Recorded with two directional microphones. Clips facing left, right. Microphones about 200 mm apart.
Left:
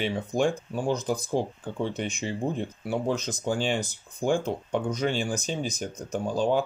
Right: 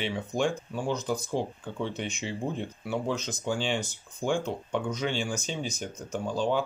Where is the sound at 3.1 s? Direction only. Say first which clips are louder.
Left 3 dB; 40° left (ahead or behind).